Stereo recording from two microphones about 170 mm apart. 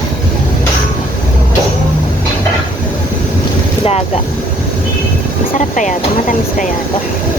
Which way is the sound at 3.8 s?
35° left (ahead or behind).